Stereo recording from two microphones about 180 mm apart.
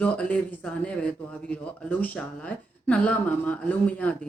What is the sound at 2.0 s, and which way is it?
Speech, 10° left (ahead or behind).